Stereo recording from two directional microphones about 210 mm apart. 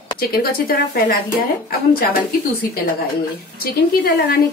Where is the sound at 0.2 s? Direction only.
45° left (ahead or behind).